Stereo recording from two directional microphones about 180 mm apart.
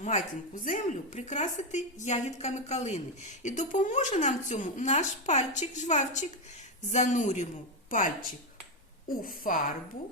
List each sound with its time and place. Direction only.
0.6 s a woman's voice: 45° left (ahead or behind)